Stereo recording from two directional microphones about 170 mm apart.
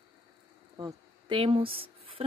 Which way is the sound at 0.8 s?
25° right (ahead or behind).